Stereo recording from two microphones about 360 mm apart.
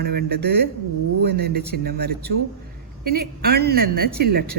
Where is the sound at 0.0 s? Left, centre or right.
Right.